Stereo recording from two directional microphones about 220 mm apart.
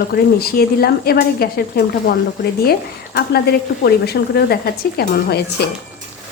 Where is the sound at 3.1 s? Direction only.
45° left (ahead or behind).